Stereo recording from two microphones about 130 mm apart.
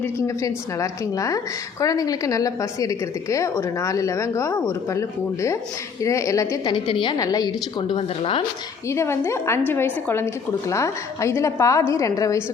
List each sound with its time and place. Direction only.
0.0 s a woman's voice: 25° left (ahead or behind)
6.7 s a woman's voice: 40° left (ahead or behind)
7.2 s a woman's voice: 30° left (ahead or behind); by 8.4 s 45° left (ahead or behind)
8.9 s a woman's voice: 20° left (ahead or behind)